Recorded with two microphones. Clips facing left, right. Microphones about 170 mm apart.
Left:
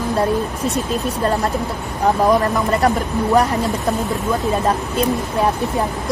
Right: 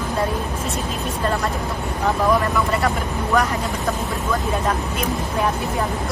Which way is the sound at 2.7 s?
35° left (ahead or behind).